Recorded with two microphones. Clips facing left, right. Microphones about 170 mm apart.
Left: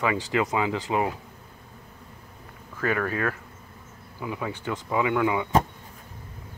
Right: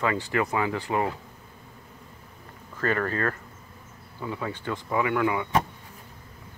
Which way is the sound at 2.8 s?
10° left (ahead or behind).